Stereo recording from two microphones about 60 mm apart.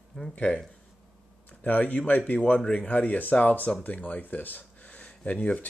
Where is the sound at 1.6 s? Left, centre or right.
Left.